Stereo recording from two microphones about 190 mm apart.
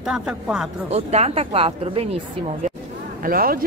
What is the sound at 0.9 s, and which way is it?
Speech, 35° right (ahead or behind).